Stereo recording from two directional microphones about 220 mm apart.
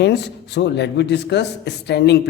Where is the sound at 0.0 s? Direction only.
50° left (ahead or behind).